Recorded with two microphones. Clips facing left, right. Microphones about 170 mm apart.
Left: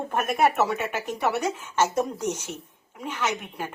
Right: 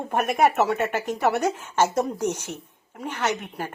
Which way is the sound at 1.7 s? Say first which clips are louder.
Right 1 dB; 10° right (ahead or behind).